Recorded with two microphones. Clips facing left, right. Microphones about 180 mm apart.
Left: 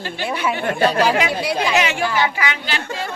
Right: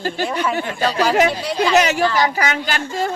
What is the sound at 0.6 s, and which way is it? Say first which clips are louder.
Speech: left 3 dB; 55° left (ahead or behind).